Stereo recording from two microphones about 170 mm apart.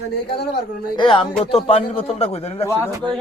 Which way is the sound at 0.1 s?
70° left (ahead or behind).